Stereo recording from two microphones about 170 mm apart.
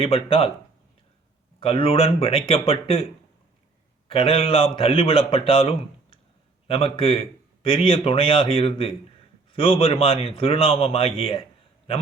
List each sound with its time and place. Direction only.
0.0 s a man's voice: 35° left (ahead or behind)
1.5 s a man's voice: 35° left (ahead or behind)
4.1 s a man's voice: 35° left (ahead or behind)